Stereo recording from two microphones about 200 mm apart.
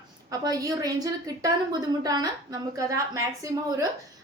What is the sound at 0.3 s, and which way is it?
A woman's voice, 20° right (ahead or behind).